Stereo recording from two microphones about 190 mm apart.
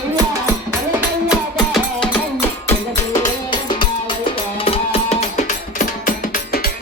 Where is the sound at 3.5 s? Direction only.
25° left (ahead or behind).